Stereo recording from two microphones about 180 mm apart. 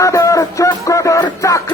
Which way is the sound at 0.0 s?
15° left (ahead or behind).